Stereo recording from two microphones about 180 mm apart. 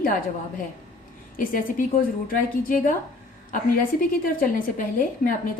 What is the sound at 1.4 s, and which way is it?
A woman's voice, 50° left (ahead or behind).